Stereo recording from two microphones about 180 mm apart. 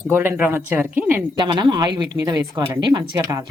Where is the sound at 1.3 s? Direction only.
25° right (ahead or behind).